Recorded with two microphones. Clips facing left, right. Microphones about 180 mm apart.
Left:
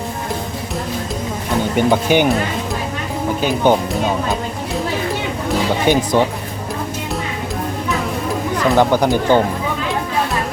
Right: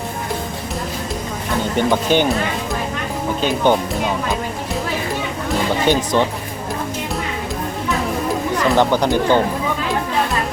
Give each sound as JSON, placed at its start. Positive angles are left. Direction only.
{"t": 1.7, "sound": "speech", "side_deg": 10}
{"t": 3.4, "sound": "speech", "side_deg": 10}
{"t": 5.9, "sound": "speech", "side_deg": 10}
{"t": 8.7, "sound": "speech", "side_deg": 10}